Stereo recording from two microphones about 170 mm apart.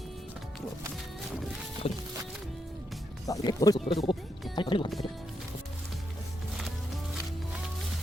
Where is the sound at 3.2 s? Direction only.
20° left (ahead or behind).